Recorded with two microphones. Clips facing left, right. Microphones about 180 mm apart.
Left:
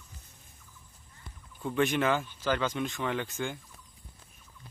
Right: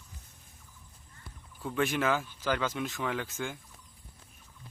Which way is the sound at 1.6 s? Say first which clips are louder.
Left 2 dB; centre (ahead or behind).